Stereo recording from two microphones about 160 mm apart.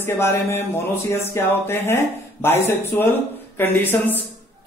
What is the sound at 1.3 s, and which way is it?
Speech, 15° left (ahead or behind).